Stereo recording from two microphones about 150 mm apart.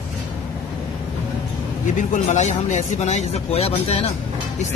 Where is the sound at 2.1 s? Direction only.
55° left (ahead or behind).